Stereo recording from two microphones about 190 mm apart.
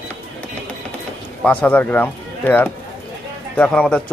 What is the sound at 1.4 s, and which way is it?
Speech, 10° left (ahead or behind).